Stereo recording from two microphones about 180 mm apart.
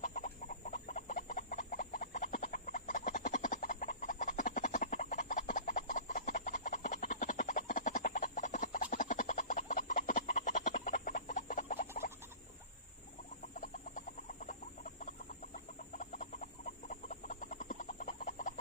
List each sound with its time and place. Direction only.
0.0 s chicken: 45° left (ahead or behind)
13.6 s chicken: 45° left (ahead or behind)